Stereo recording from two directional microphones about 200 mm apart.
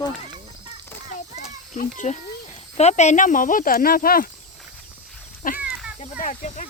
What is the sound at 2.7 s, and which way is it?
Speech, 35° left (ahead or behind).